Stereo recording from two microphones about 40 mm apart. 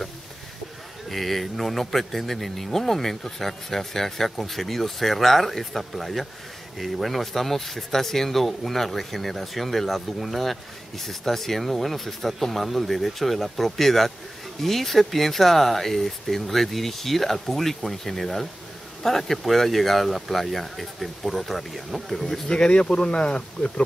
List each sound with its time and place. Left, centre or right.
1.0 s speech: centre
22.5 s speech: left